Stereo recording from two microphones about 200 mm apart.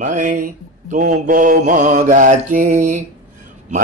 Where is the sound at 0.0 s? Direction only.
40° right (ahead or behind).